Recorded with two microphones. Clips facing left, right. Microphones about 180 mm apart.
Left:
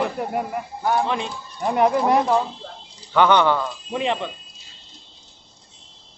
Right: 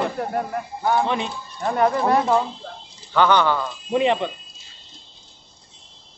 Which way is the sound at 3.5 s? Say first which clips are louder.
Right 2 dB; 5° right (ahead or behind).